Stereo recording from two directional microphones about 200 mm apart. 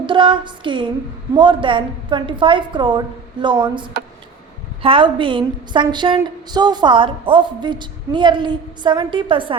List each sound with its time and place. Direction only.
0.0 s a woman's voice: 25° right (ahead or behind)